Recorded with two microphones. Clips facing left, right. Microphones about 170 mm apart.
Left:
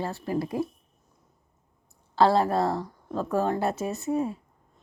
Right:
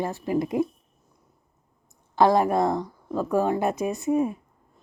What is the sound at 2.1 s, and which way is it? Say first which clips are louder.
A woman's voice: right 2 dB; 15° right (ahead or behind).